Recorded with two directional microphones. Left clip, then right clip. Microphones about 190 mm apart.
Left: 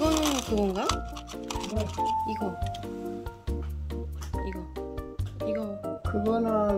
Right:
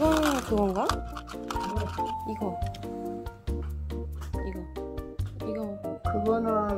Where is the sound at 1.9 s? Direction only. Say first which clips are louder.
Left 4 dB; 5° right (ahead or behind).